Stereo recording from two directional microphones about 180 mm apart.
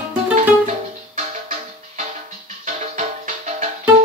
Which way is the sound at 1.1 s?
40° right (ahead or behind).